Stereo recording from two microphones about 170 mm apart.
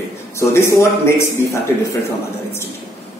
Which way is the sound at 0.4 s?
15° left (ahead or behind).